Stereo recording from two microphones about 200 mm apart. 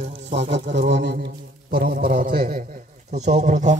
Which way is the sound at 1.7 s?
50° right (ahead or behind).